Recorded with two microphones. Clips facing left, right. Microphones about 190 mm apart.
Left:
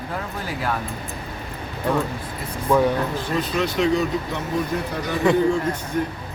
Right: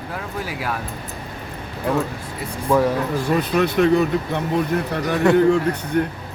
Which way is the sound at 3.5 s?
60° right (ahead or behind).